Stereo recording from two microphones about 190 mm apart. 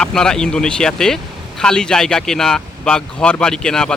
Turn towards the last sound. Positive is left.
turn(degrees=5)  # may be behind; listen again after turning